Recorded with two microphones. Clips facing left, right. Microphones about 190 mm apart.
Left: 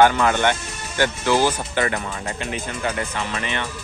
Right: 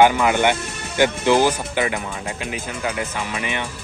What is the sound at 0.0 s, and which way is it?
Speech, 15° right (ahead or behind).